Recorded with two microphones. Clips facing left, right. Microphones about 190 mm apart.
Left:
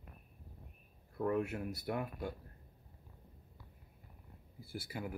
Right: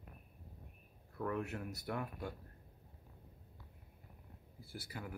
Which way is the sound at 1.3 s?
10° left (ahead or behind).